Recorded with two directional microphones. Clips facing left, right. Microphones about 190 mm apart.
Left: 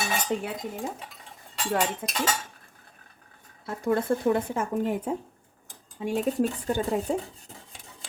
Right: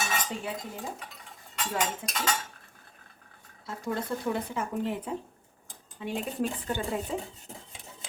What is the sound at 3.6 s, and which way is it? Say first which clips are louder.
Speech: left 7 dB; 55° left (ahead or behind).